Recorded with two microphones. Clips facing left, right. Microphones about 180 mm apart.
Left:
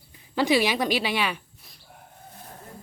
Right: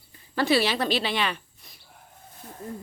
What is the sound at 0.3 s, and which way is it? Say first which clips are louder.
Speech: left 1 dB; 15° left (ahead or behind).